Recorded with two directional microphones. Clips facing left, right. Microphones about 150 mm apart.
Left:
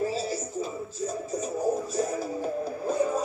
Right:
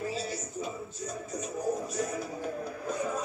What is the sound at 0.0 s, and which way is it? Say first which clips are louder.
Music: left 6 dB; 35° left (ahead or behind).